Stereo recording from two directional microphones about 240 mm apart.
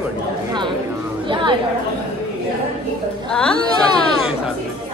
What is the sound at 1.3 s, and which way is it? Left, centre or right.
Speech, centre.